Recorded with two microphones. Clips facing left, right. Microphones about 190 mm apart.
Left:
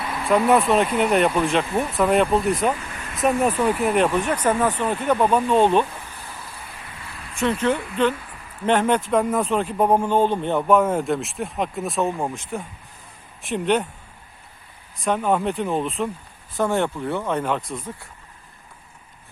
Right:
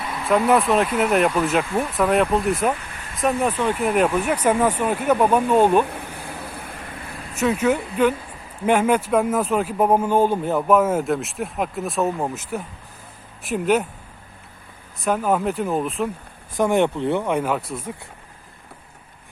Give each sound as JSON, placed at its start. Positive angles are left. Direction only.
{"t": 0.3, "sound": "speech", "side_deg": 0}
{"t": 3.9, "sound": "speech", "side_deg": -5}
{"t": 5.8, "sound": "a sound", "side_deg": -65}
{"t": 7.3, "sound": "speech", "side_deg": -5}
{"t": 15.0, "sound": "speech", "side_deg": -5}
{"t": 16.6, "sound": "speech", "side_deg": -15}